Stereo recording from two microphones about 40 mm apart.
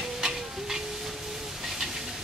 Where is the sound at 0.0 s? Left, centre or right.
Centre.